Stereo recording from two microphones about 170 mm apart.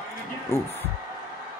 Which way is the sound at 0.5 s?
15° left (ahead or behind).